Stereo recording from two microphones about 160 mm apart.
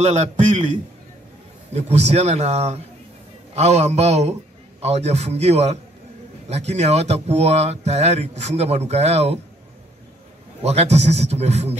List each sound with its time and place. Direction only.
0.0 s speech: 45° right (ahead or behind)
1.7 s a man's voice: 40° right (ahead or behind)
10.6 s a man's voice: 40° right (ahead or behind)